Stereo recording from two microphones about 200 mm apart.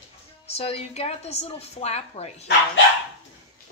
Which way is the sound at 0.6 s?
30° left (ahead or behind).